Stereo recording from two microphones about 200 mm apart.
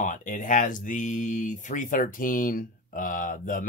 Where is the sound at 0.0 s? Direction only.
40° left (ahead or behind).